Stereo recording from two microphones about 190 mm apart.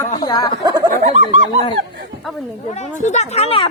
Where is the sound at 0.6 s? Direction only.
20° right (ahead or behind).